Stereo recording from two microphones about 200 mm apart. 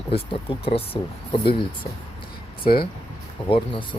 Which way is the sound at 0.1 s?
30° left (ahead or behind).